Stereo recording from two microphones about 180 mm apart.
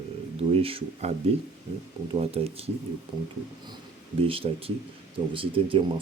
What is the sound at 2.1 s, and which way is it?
Speech, 35° right (ahead or behind).